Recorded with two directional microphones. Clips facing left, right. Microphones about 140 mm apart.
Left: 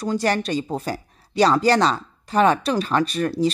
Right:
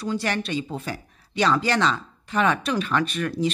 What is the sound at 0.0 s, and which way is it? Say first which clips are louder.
Speech: left 4 dB; 40° left (ahead or behind).